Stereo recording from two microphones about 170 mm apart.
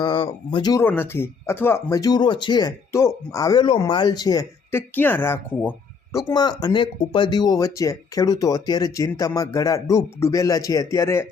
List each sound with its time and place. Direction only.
0.0 s speech: 30° left (ahead or behind)
4.9 s speech: 10° left (ahead or behind)